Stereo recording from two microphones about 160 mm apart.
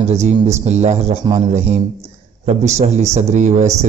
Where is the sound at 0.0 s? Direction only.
45° right (ahead or behind).